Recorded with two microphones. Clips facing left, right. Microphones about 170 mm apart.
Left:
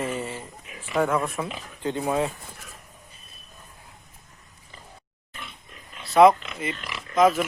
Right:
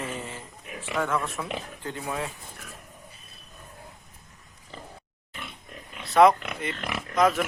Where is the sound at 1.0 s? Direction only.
30° left (ahead or behind).